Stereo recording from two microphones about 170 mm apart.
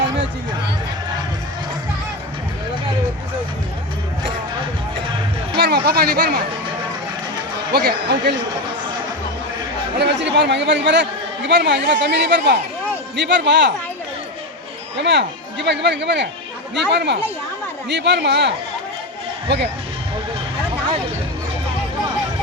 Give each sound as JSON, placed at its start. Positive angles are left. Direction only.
{"t": 5.5, "sound": "speech", "side_deg": -70}
{"t": 7.7, "sound": "speech", "side_deg": -70}
{"t": 10.0, "sound": "speech", "side_deg": -90}
{"t": 14.9, "sound": "a man's voice", "side_deg": -90}